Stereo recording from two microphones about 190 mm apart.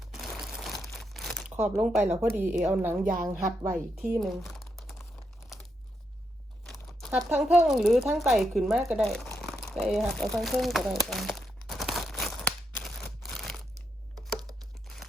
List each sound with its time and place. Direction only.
0.0 s crumpling: centre (ahead or behind)
1.5 s a woman's voice: 10° right (ahead or behind)
7.1 s speech: 5° right (ahead or behind)
9.4 s crumpling: centre (ahead or behind)
9.9 s speech: centre (ahead or behind)
12.2 s a sound: 5° left (ahead or behind)